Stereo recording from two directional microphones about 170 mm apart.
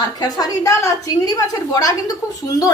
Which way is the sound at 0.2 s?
25° left (ahead or behind).